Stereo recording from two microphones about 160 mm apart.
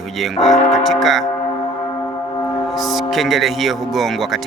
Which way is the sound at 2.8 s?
Centre (ahead or behind).